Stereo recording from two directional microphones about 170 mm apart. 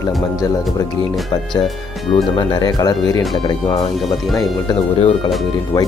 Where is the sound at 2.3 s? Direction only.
25° left (ahead or behind).